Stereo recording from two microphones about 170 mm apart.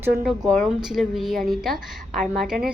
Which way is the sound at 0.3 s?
5° left (ahead or behind).